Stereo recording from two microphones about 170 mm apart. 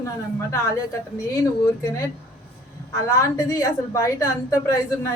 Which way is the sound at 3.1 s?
20° left (ahead or behind).